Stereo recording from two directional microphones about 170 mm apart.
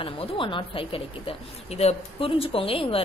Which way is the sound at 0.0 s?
30° left (ahead or behind).